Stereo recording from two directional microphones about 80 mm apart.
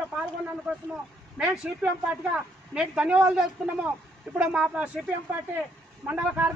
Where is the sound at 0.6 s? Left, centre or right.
Centre.